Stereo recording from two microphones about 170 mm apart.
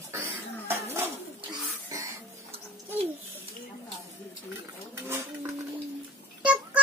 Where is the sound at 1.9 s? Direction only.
20° right (ahead or behind).